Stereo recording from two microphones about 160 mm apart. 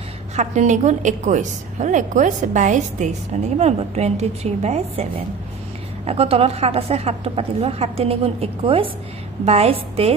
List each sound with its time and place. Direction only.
0.4 s a woman's voice: 50° right (ahead or behind)
6.0 s a woman's voice: 40° right (ahead or behind)